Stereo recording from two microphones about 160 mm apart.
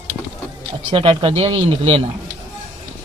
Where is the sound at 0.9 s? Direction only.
30° right (ahead or behind).